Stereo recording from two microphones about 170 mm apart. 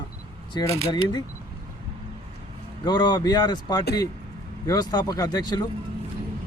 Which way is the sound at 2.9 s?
25° left (ahead or behind).